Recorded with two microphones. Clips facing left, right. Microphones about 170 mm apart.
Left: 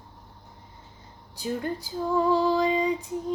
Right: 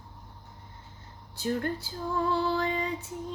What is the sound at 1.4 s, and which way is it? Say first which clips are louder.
Music: even; 15° left (ahead or behind).